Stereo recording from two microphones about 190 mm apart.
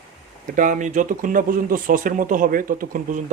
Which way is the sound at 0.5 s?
45° right (ahead or behind).